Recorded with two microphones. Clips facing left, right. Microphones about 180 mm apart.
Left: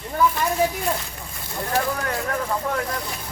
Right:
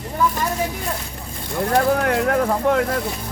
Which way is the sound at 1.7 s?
65° right (ahead or behind).